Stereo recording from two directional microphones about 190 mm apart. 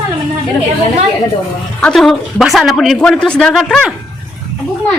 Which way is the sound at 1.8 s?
5° left (ahead or behind).